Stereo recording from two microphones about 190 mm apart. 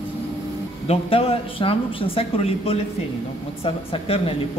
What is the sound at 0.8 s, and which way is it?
Speech, 30° left (ahead or behind).